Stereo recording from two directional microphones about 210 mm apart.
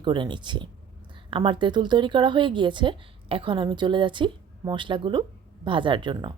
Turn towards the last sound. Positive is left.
turn(degrees=-20)  # may be behind; listen again after turning